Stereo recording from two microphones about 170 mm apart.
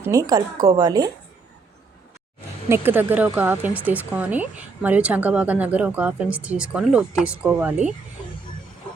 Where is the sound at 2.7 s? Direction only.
10° right (ahead or behind).